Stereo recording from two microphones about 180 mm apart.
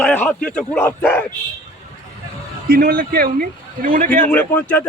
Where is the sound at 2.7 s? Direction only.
55° right (ahead or behind).